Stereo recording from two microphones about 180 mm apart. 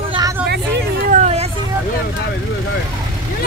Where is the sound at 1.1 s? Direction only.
40° right (ahead or behind).